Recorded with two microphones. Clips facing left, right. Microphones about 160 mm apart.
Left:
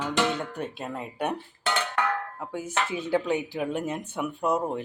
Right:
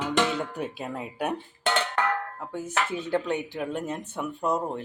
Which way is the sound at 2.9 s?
5° left (ahead or behind).